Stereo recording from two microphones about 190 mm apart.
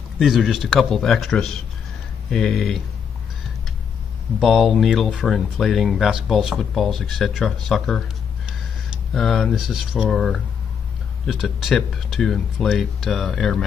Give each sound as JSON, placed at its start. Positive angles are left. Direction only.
{"t": 0.2, "sound": "speech", "side_deg": 0}
{"t": 4.4, "sound": "speech", "side_deg": 0}